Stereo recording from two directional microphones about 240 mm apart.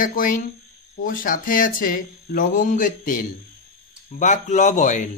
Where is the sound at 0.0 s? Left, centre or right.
Left.